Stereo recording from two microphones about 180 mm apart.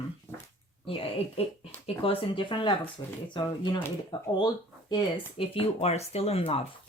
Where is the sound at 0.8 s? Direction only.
30° left (ahead or behind).